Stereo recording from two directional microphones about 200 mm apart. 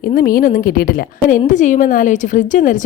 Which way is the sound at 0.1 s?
45° left (ahead or behind).